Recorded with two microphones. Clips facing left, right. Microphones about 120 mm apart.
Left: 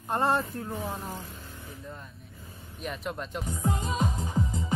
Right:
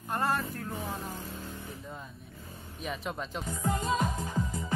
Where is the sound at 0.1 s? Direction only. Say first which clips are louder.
Left 4 dB; 25° left (ahead or behind).